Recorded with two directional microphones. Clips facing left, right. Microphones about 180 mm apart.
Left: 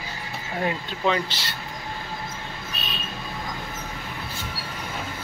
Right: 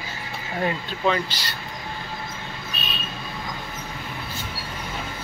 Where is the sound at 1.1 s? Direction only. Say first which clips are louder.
Right 1 dB; 25° left (ahead or behind).